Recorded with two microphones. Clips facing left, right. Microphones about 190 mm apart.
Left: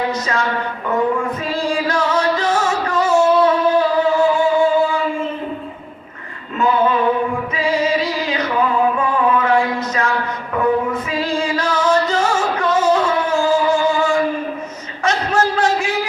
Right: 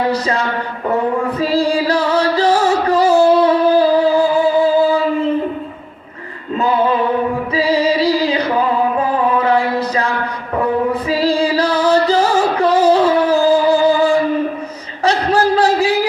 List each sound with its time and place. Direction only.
0.1 s speech: 35° right (ahead or behind)
1.4 s music: 35° right (ahead or behind)
7.5 s music: 35° right (ahead or behind)
15.0 s a sound: 35° right (ahead or behind)